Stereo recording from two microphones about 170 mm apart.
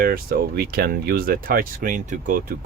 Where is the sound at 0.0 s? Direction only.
60° right (ahead or behind).